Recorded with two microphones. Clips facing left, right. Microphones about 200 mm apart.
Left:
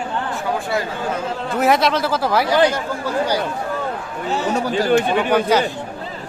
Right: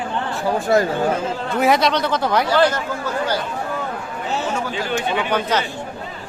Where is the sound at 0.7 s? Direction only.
45° right (ahead or behind).